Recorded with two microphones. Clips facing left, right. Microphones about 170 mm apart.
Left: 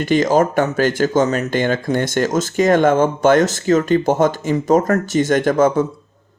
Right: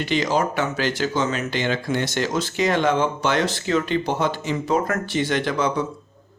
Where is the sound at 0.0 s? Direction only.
45° left (ahead or behind).